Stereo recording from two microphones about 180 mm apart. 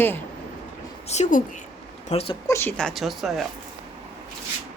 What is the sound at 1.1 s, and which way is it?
Speech, 40° left (ahead or behind).